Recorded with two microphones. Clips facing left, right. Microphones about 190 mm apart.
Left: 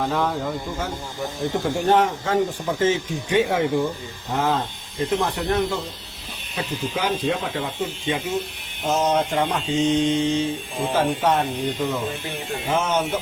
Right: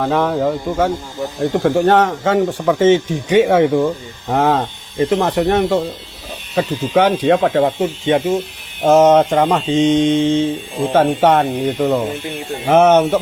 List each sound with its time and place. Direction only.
0.0 s speech: 75° right (ahead or behind)
1.4 s speech: 90° right
1.9 s speech: 75° right (ahead or behind)
10.1 s a sound: 20° right (ahead or behind)
10.9 s speech: 75° right (ahead or behind)